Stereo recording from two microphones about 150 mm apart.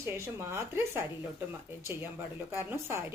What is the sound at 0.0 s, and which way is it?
Speech, 15° right (ahead or behind).